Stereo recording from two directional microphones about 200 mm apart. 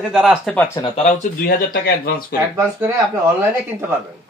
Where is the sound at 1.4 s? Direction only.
50° left (ahead or behind).